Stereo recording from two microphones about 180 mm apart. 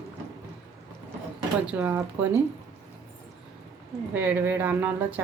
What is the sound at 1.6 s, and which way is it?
Speech, 10° right (ahead or behind).